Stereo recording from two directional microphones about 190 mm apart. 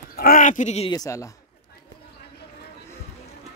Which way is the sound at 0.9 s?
20° left (ahead or behind).